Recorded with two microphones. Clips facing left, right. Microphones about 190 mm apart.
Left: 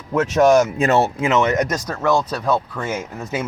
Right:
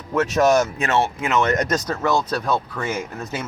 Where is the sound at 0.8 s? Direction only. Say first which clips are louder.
Left 4 dB; 40° left (ahead or behind).